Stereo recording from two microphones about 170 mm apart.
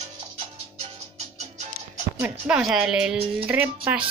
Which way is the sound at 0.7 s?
40° right (ahead or behind).